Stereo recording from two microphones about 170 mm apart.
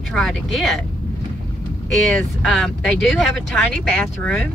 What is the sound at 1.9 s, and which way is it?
Speech, 5° left (ahead or behind).